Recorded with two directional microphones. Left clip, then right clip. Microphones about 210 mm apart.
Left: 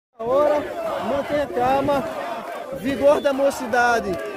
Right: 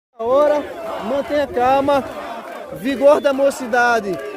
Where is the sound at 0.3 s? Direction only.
50° right (ahead or behind); by 4.1 s 25° right (ahead or behind).